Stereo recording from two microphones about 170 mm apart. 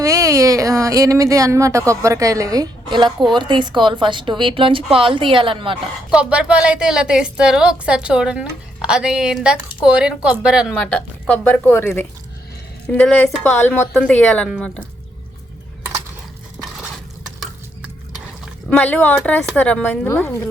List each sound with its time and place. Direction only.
0.0 s a woman's voice: 20° right (ahead or behind)
6.1 s a woman's voice: 5° right (ahead or behind)
10.8 s speech: 5° left (ahead or behind)
18.7 s speech: 10° left (ahead or behind)